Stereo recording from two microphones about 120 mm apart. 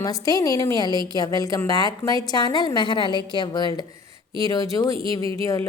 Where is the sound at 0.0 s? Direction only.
30° left (ahead or behind).